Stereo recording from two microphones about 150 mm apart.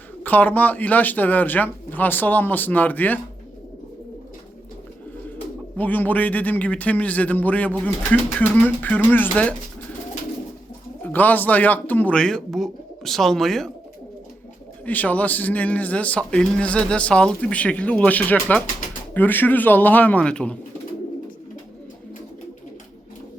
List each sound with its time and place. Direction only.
0.2 s a man's voice: 10° left (ahead or behind)
5.7 s a man's voice: 10° left (ahead or behind)
11.0 s a man's voice: 10° left (ahead or behind)
14.8 s a man's voice: 10° left (ahead or behind)